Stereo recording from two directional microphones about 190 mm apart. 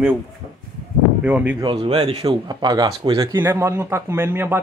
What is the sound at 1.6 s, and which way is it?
Speech, 25° right (ahead or behind).